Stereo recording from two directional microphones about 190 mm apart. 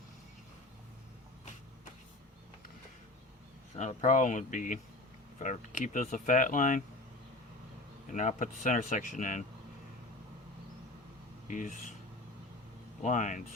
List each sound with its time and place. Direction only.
3.8 s speech: 40° left (ahead or behind)
8.1 s speech: 40° left (ahead or behind)
11.4 s speech: 45° left (ahead or behind)
13.0 s speech: 40° left (ahead or behind)